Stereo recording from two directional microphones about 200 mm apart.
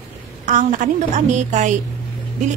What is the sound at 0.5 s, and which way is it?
A woman's voice, 40° right (ahead or behind).